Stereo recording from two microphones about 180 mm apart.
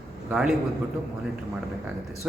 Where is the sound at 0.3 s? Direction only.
5° right (ahead or behind).